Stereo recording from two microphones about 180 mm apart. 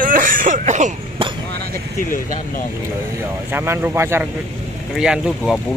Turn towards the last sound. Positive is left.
turn(degrees=-5)  # may be behind; listen again after turning